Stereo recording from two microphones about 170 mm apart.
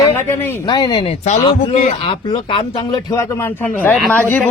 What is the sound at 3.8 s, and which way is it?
Speech, 10° left (ahead or behind).